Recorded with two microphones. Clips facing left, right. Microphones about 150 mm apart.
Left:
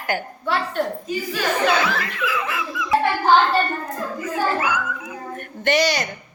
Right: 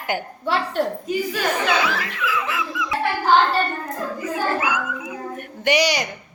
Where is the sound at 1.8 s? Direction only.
5° right (ahead or behind).